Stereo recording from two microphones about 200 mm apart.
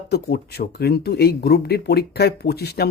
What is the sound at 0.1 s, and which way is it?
Speech, 50° left (ahead or behind).